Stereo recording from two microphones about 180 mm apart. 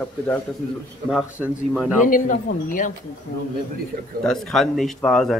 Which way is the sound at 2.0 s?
45° left (ahead or behind).